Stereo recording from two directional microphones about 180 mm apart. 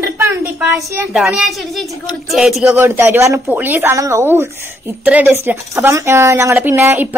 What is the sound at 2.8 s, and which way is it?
A woman's voice, 15° right (ahead or behind).